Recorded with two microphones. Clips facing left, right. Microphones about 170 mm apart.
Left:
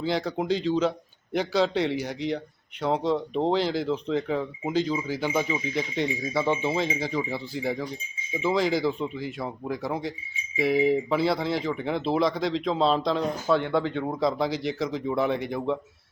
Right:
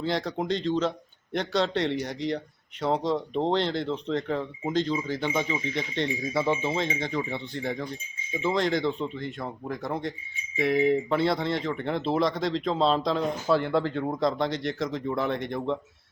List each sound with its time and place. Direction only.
0.0 s speech: centre (ahead or behind)